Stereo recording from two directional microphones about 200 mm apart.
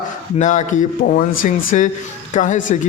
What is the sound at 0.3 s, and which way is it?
Speech, 35° left (ahead or behind).